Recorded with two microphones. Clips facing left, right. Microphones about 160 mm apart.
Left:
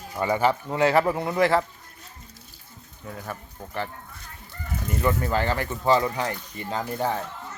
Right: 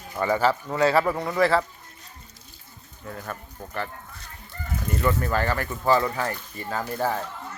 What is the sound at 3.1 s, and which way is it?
Speech, 5° left (ahead or behind).